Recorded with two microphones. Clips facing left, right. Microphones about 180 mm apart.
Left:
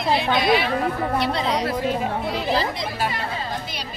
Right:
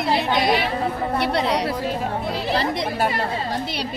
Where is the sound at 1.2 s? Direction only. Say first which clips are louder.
Right 4 dB; 70° right (ahead or behind).